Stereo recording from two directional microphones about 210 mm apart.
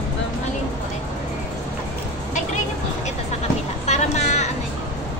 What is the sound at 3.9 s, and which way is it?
Vehicle, 35° left (ahead or behind).